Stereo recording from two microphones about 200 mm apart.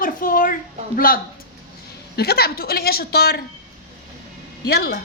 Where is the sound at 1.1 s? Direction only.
45° left (ahead or behind).